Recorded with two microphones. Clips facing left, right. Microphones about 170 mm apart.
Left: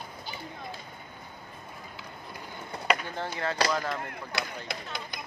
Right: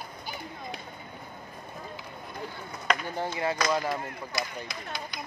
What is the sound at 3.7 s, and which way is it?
Speech, 10° right (ahead or behind).